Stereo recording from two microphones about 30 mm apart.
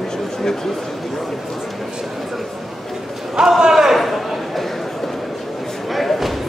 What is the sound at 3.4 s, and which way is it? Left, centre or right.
Crowd, right.